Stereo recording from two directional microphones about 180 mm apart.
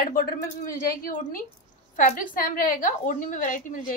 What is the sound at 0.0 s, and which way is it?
Speech, 55° left (ahead or behind).